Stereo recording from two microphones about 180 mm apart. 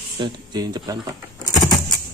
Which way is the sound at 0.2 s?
25° right (ahead or behind).